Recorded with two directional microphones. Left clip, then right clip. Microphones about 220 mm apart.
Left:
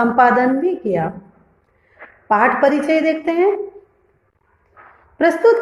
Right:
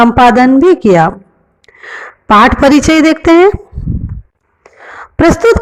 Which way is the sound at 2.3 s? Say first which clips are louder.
Right 8 dB; 40° right (ahead or behind).